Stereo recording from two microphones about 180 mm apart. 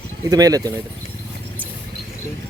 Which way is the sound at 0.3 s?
20° right (ahead or behind).